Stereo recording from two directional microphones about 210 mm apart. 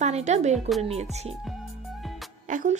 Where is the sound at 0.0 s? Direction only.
35° right (ahead or behind).